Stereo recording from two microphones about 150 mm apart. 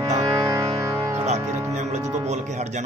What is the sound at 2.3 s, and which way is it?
Speech, 50° right (ahead or behind).